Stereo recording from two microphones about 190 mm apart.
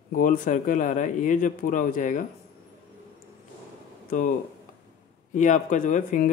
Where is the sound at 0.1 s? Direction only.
45° left (ahead or behind).